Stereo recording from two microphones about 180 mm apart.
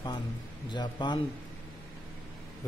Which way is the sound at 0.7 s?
25° left (ahead or behind).